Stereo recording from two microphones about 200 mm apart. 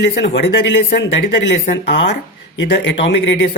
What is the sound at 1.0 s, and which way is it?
A man's voice, 60° left (ahead or behind).